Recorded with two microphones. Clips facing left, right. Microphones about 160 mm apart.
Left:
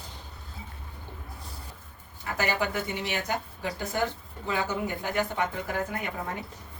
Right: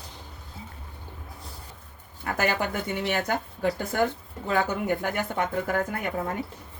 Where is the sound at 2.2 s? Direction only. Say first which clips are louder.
Right 2 dB; 50° right (ahead or behind).